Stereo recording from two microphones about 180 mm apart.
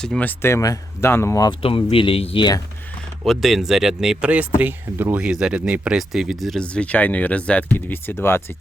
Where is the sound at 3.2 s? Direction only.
Centre (ahead or behind).